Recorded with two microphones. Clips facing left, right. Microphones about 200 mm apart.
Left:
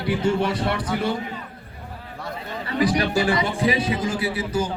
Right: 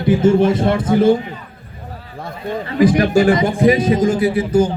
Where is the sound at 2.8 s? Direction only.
45° right (ahead or behind).